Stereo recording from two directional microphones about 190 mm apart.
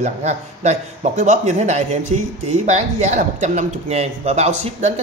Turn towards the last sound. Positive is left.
turn(degrees=-35)  # may be behind; listen again after turning